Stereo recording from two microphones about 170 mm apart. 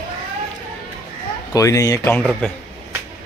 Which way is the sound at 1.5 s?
20° left (ahead or behind).